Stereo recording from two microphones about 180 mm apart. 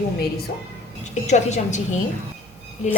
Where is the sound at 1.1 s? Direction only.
40° left (ahead or behind).